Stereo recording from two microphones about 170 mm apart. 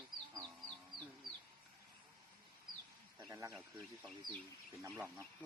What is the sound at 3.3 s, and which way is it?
Speech, 20° right (ahead or behind).